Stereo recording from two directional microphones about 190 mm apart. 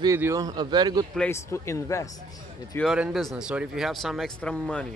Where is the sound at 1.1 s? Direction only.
10° left (ahead or behind).